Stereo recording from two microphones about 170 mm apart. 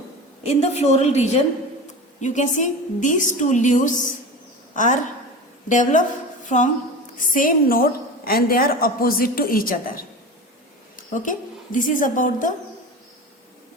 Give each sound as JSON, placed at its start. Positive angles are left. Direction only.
{"t": 0.4, "sound": "a woman's voice", "side_deg": 40}
{"t": 7.3, "sound": "a woman's voice", "side_deg": 55}